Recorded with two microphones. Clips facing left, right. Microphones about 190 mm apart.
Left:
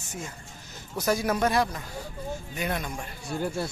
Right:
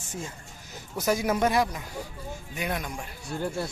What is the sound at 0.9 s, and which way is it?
Speech, 15° right (ahead or behind).